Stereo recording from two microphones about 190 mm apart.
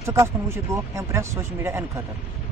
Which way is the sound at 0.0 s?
15° right (ahead or behind).